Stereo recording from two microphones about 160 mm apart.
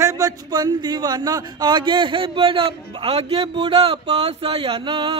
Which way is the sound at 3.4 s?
30° right (ahead or behind).